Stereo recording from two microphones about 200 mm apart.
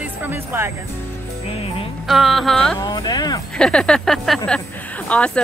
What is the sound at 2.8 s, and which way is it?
Speech, 20° left (ahead or behind).